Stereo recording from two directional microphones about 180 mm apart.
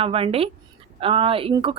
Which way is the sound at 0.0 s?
30° right (ahead or behind).